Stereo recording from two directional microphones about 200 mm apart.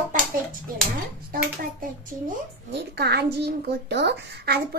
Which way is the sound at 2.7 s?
55° right (ahead or behind).